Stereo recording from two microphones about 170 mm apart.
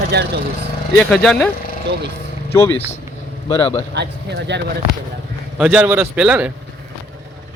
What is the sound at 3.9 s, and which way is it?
Speech, 85° right.